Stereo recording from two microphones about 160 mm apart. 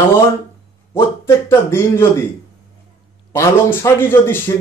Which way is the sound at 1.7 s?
15° left (ahead or behind).